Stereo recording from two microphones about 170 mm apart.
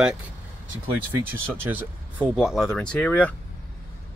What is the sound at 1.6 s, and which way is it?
Speech, 10° right (ahead or behind).